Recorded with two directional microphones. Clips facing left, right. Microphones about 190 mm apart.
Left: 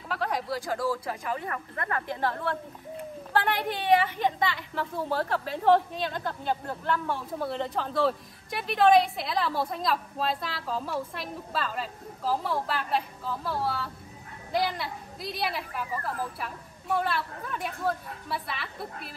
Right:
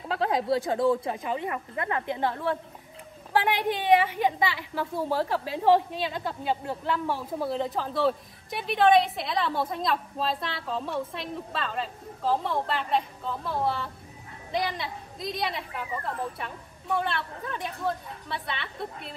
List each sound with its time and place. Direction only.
0.1 s speech: 25° right (ahead or behind); by 13.5 s 5° left (ahead or behind)
14.5 s speech: 5° left (ahead or behind)